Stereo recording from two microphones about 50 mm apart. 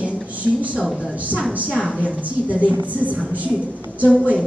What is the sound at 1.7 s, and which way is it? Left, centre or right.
Speech, centre.